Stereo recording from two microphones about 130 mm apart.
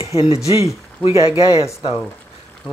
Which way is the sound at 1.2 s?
45° left (ahead or behind).